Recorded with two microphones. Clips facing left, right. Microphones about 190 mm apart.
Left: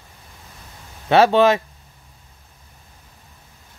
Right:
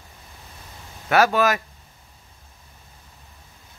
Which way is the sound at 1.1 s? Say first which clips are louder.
Left 5 dB; 25° left (ahead or behind).